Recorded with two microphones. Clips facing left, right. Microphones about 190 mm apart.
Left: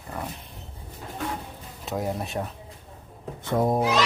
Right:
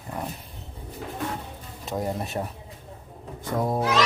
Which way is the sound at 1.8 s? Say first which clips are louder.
Even; centre (ahead or behind).